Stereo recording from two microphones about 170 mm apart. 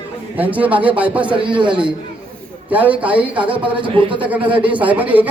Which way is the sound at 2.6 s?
10° right (ahead or behind).